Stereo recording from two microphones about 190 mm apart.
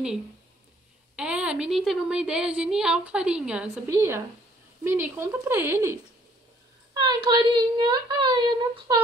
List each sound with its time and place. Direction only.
1.1 s a woman's voice: 5° right (ahead or behind); by 9.0 s 20° right (ahead or behind)